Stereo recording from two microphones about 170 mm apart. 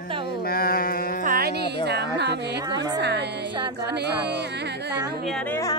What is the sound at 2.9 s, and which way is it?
Music, 85° right.